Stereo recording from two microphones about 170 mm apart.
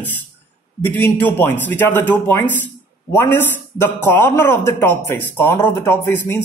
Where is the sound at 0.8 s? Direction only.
10° left (ahead or behind).